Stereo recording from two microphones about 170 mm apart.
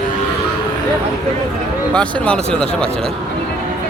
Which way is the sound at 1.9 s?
5° left (ahead or behind).